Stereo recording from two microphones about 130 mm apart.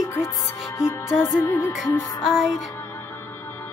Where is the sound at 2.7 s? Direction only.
20° left (ahead or behind).